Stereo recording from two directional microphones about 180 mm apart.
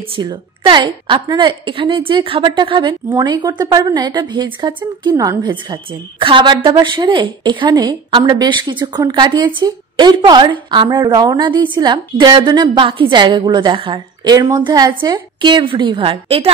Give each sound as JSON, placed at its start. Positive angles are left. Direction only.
{"t": 0.1, "sound": "a woman's voice", "side_deg": -25}